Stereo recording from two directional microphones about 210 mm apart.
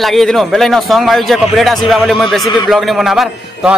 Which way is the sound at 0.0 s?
Centre (ahead or behind).